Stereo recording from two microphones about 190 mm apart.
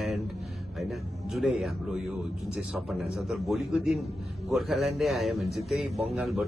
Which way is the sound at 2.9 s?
Centre (ahead or behind).